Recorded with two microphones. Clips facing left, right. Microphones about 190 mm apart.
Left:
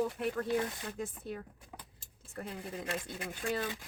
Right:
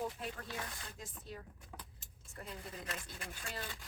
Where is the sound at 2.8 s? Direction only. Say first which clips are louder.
Left 8 dB; 30° left (ahead or behind).